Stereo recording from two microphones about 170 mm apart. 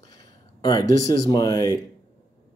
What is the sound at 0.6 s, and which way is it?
Speech, 25° left (ahead or behind).